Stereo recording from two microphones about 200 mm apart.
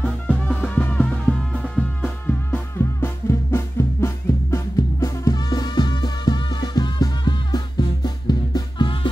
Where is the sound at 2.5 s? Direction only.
10° left (ahead or behind).